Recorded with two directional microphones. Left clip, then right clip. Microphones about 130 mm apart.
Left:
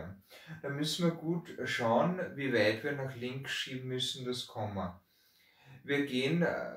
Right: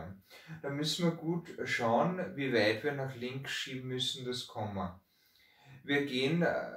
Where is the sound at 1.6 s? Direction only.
20° right (ahead or behind).